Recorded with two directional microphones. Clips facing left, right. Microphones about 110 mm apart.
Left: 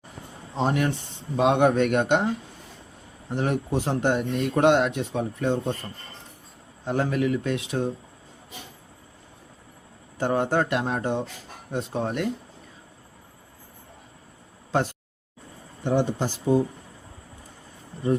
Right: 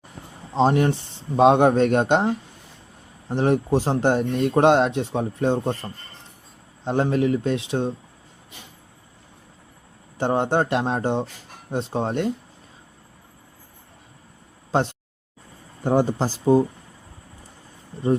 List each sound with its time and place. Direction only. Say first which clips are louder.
0.5 s a man's voice: right 5 dB; 30° right (ahead or behind)
10.2 s a man's voice: right 2 dB; 25° right (ahead or behind)
15.8 s speech: right 3 dB; 40° right (ahead or behind)